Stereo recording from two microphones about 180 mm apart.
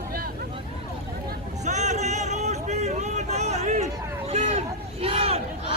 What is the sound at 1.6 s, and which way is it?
Vehicle, 40° right (ahead or behind).